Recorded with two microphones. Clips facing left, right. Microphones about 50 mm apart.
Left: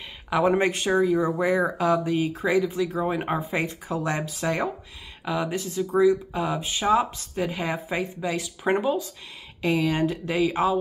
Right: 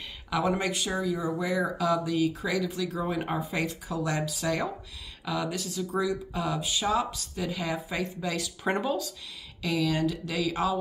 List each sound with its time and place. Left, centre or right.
0.3 s speech: left
9.6 s speech: left